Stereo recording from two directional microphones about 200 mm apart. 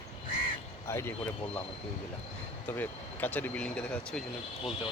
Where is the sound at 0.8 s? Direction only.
15° left (ahead or behind).